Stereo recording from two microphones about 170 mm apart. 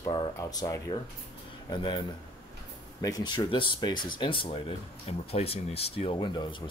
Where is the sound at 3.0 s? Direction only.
25° left (ahead or behind).